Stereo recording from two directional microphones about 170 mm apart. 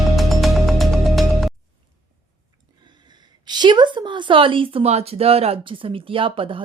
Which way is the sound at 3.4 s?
25° right (ahead or behind).